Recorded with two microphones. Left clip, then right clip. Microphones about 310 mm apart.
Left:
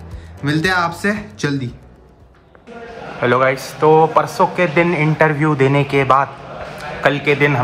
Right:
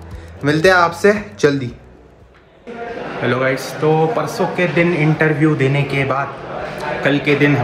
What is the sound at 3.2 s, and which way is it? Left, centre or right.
Speech, centre.